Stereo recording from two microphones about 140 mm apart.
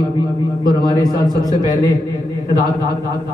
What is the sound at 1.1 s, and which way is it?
Speech, 30° right (ahead or behind).